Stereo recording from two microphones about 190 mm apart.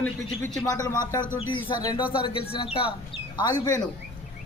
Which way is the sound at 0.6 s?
20° left (ahead or behind).